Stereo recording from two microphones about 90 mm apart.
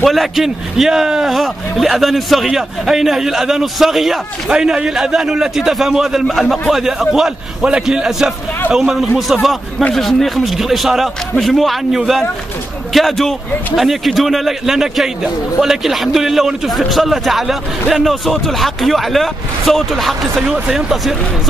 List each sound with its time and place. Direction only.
0.0 s speech: centre (ahead or behind)
20.4 s speech: 10° right (ahead or behind)